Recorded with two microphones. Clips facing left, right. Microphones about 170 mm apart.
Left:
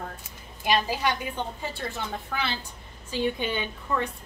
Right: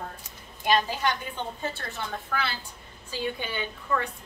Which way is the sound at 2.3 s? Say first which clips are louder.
Even; 20° left (ahead or behind).